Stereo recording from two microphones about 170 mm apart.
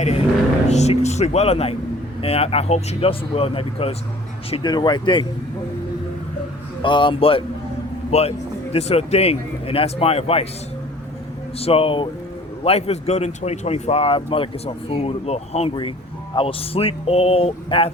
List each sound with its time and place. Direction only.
0.7 s speech: 40° left (ahead or behind)
6.8 s speech: 30° left (ahead or behind)
11.5 s speech: 35° left (ahead or behind)